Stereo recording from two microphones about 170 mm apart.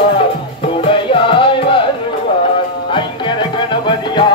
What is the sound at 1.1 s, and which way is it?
Music, 30° left (ahead or behind).